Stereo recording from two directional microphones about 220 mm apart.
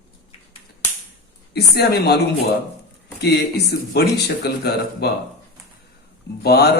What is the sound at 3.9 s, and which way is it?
A man's voice, 50° left (ahead or behind).